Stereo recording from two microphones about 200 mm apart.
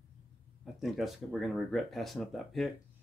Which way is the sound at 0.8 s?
Centre (ahead or behind).